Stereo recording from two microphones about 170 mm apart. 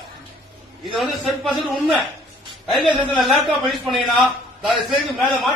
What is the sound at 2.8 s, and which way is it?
Speech, 30° right (ahead or behind).